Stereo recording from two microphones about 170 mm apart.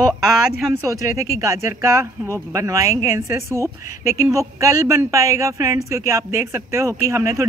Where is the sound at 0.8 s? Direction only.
20° right (ahead or behind).